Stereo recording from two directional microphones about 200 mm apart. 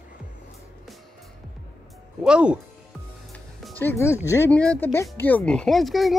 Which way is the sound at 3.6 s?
10° left (ahead or behind).